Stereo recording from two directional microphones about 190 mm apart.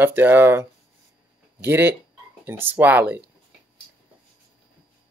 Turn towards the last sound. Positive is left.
turn(degrees=-10)  # may be behind; listen again after turning